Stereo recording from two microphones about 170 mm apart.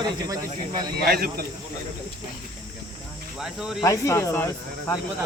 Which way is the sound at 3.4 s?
Centre (ahead or behind).